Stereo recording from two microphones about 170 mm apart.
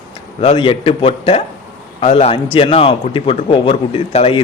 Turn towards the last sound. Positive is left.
turn(degrees=35)  # may be behind; listen again after turning